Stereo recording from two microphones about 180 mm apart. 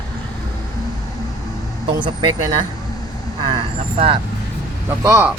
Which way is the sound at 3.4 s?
30° right (ahead or behind).